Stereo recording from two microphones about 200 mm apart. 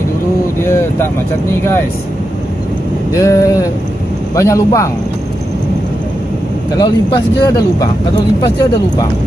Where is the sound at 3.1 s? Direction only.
15° left (ahead or behind).